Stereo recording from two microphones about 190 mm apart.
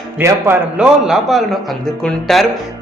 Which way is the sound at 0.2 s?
15° right (ahead or behind).